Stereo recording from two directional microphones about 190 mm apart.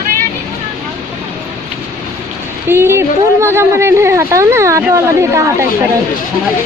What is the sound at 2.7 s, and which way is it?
A woman's voice, 10° right (ahead or behind).